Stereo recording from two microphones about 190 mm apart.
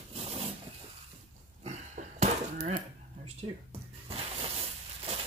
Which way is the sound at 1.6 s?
35° right (ahead or behind).